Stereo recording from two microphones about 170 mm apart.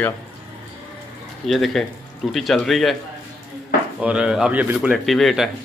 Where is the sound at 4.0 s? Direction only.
5° right (ahead or behind).